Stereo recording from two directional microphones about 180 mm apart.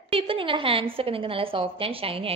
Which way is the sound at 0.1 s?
30° right (ahead or behind).